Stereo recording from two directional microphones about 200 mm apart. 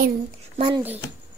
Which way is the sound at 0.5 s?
25° right (ahead or behind).